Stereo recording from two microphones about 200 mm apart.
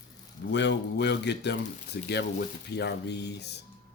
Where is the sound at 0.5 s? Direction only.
60° left (ahead or behind).